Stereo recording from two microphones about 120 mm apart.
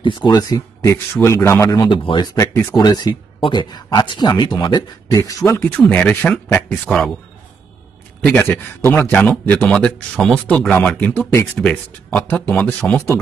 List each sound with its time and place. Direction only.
0.0 s speech: 40° left (ahead or behind)
1.9 s speech: 45° left (ahead or behind)
2.3 s speech: 25° left (ahead or behind)
5.7 s speech: 10° left (ahead or behind)
8.3 s speech: 20° left (ahead or behind)